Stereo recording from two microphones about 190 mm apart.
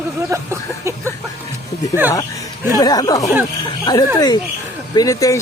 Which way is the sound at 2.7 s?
20° left (ahead or behind).